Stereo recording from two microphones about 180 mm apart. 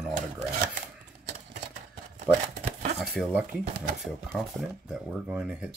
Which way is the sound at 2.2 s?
35° right (ahead or behind).